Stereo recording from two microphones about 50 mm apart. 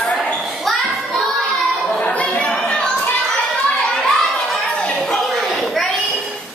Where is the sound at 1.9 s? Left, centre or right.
Left.